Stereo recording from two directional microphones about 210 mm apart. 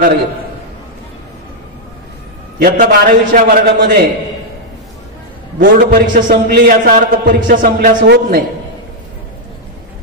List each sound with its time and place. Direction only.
2.6 s a man's voice: 40° right (ahead or behind)
5.6 s a man's voice: 50° right (ahead or behind)